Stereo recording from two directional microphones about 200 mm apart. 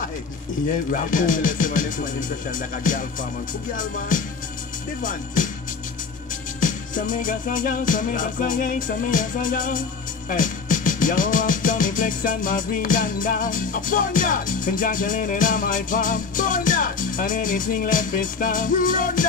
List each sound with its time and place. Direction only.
0.9 s speech: 40° left (ahead or behind)
3.7 s music: 40° left (ahead or behind)
5.0 s speech: 40° left (ahead or behind)
6.6 s music: 40° left (ahead or behind)